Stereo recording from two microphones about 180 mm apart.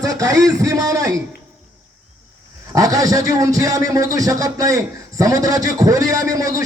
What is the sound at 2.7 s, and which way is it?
A man's voice, 20° right (ahead or behind).